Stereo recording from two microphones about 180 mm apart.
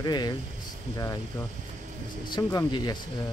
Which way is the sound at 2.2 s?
25° left (ahead or behind).